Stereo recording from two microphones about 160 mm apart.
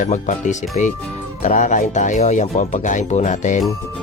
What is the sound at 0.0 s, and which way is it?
Speech, 50° left (ahead or behind).